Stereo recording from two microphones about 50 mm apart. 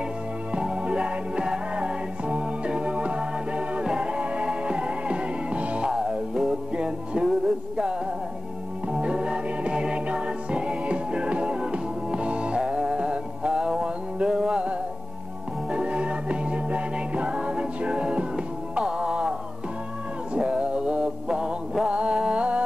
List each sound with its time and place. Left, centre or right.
0.5 s music: right
20.3 s music: right